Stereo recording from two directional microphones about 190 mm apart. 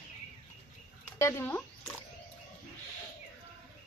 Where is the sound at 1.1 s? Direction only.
15° left (ahead or behind).